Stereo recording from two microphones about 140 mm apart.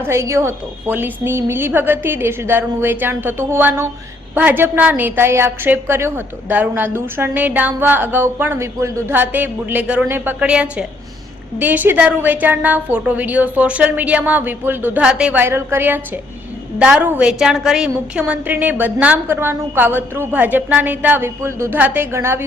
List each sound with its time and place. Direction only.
0.0 s a woman's voice: 20° right (ahead or behind)